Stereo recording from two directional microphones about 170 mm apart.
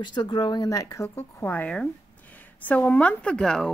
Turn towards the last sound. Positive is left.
turn(degrees=5)  # may be behind; listen again after turning